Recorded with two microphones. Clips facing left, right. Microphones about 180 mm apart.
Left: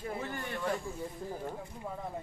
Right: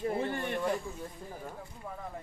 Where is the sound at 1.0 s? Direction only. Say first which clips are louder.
Left 4 dB; 15° left (ahead or behind).